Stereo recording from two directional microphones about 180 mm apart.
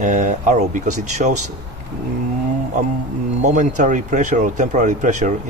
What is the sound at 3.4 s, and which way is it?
Speech, 45° right (ahead or behind).